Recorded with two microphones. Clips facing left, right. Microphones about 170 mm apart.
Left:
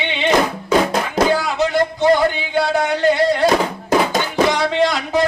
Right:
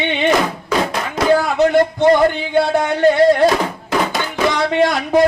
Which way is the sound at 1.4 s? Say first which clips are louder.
Right 4 dB; 55° right (ahead or behind).